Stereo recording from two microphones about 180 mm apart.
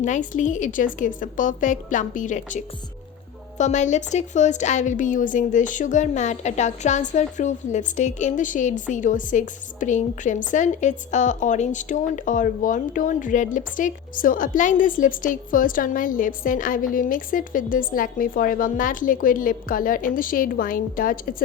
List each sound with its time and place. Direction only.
0.0 s a woman's voice: 45° left (ahead or behind)